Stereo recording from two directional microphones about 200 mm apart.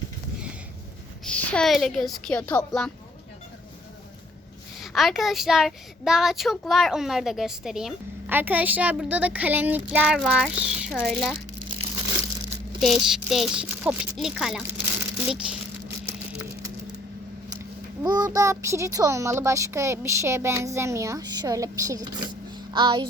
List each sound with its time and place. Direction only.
1.2 s a woman's voice: 5° left (ahead or behind)
4.8 s a woman's voice: centre (ahead or behind)
12.8 s a woman's voice: centre (ahead or behind)
17.5 s a child's voice: 20° right (ahead or behind)